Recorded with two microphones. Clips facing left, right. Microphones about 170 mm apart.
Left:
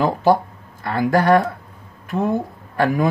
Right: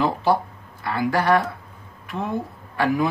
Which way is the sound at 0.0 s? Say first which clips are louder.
Left 4 dB; 45° left (ahead or behind).